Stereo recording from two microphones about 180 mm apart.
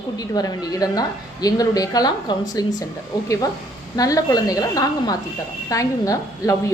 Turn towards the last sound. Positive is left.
turn(degrees=20)  # may be behind; listen again after turning